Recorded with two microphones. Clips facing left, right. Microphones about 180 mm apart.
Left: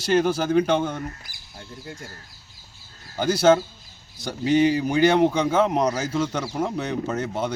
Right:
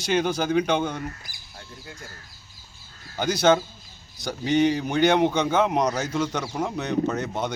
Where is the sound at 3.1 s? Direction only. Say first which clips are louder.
Left 2 dB; 5° left (ahead or behind).